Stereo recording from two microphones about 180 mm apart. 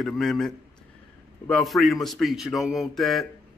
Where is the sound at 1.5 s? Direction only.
Centre (ahead or behind).